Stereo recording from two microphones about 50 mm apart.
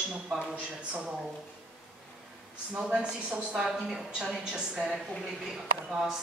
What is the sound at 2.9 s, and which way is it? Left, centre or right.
A woman's voice, right.